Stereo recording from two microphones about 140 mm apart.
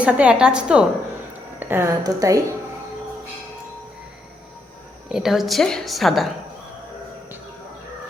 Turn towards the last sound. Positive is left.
turn(degrees=0)  # may be behind; listen again after turning